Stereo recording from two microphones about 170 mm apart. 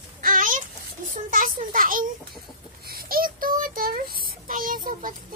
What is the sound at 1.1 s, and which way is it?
Speech, 55° right (ahead or behind).